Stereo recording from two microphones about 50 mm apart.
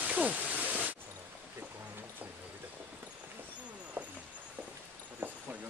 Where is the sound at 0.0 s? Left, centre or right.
Right.